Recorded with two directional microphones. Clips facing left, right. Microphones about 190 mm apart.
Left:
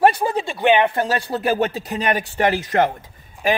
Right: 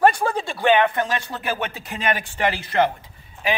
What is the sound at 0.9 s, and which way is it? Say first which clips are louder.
Speech: left 4 dB; 35° left (ahead or behind).